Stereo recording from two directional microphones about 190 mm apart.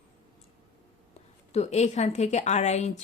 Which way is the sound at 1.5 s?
35° left (ahead or behind).